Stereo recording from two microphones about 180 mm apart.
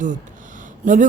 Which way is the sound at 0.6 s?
45° right (ahead or behind).